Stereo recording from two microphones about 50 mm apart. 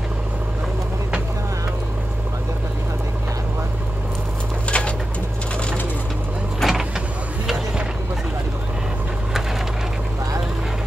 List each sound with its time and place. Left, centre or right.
4.6 s bird: left
6.6 s vehicle: centre